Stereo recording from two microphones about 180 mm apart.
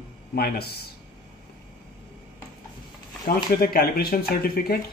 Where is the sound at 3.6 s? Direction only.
55° left (ahead or behind).